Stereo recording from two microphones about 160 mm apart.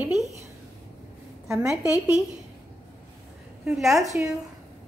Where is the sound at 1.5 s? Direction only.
5° right (ahead or behind).